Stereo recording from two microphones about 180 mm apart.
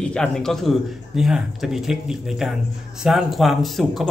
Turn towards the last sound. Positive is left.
turn(degrees=0)  # may be behind; listen again after turning